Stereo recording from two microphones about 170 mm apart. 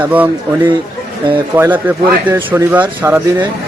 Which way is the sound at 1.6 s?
10° right (ahead or behind).